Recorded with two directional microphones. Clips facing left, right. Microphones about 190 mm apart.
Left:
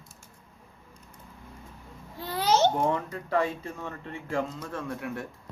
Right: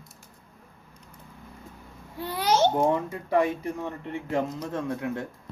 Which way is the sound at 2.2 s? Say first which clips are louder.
Right 1 dB; 10° right (ahead or behind).